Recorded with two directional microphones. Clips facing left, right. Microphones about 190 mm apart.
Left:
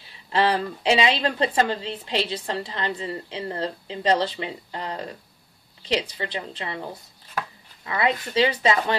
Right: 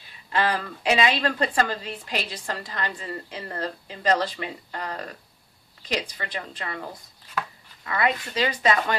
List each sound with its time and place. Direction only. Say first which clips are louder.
0.3 s a woman's voice: left 3 dB; 25° left (ahead or behind)